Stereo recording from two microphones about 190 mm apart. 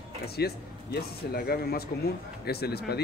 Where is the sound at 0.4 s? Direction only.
60° left (ahead or behind).